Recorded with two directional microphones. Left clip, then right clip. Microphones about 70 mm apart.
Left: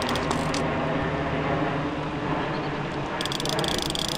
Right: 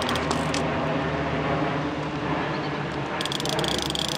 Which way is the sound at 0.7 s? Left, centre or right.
Left.